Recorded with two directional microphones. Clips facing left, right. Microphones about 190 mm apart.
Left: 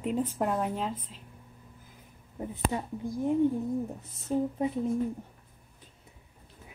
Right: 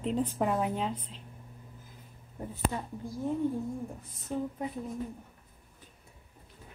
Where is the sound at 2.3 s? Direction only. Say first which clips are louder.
Left 2 dB; 15° left (ahead or behind).